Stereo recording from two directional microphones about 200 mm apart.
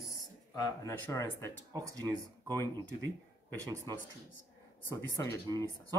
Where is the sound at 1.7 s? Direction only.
20° right (ahead or behind).